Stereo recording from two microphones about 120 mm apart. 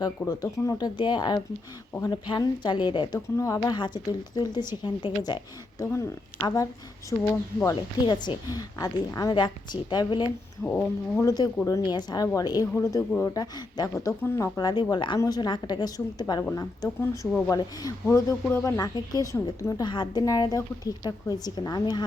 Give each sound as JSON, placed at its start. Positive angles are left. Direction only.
{"t": 0.0, "sound": "a woman's voice", "side_deg": 30}
{"t": 0.9, "sound": "a woman's voice", "side_deg": 40}
{"t": 3.3, "sound": "a woman's voice", "side_deg": 25}
{"t": 5.8, "sound": "a woman's voice", "side_deg": 25}
{"t": 7.6, "sound": "a woman's voice", "side_deg": 30}
{"t": 8.0, "sound": "a woman's voice", "side_deg": 40}
{"t": 10.6, "sound": "speech", "side_deg": 10}
{"t": 11.2, "sound": "a woman's voice", "side_deg": 30}
{"t": 17.0, "sound": "speech", "side_deg": 10}
{"t": 18.6, "sound": "a woman's voice", "side_deg": 30}
{"t": 19.8, "sound": "a woman's voice", "side_deg": 40}